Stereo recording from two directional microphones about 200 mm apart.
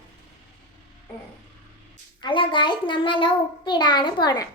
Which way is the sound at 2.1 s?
25° left (ahead or behind).